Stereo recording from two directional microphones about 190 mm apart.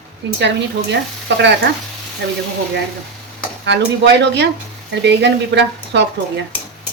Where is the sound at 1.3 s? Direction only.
70° right (ahead or behind).